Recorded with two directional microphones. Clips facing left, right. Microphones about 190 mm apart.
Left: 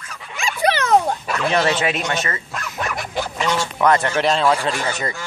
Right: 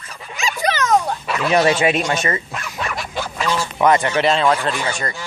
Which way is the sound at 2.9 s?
20° left (ahead or behind).